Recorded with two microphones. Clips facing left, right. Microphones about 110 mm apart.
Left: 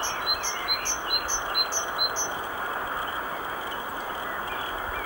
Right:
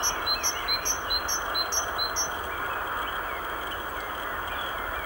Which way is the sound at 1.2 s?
Centre (ahead or behind).